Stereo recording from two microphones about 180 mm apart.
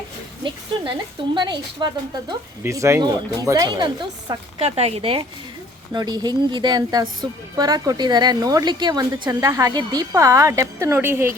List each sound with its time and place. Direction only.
1.3 s a woman's voice: 25° right (ahead or behind)